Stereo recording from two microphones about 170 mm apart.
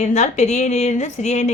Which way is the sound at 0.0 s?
45° left (ahead or behind).